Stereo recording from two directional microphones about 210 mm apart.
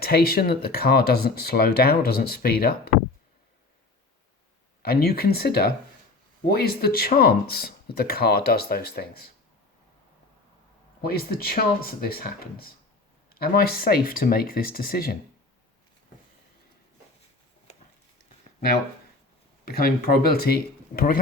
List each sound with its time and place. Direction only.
0.0 s speech: 45° left (ahead or behind)
4.8 s speech: 45° left (ahead or behind)
11.0 s speech: 45° left (ahead or behind)
19.6 s speech: 45° left (ahead or behind)